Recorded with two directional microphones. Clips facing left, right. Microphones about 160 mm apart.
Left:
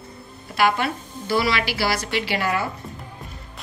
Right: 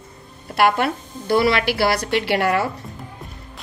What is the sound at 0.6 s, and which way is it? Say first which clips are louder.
Speech: right 3 dB; 55° right (ahead or behind).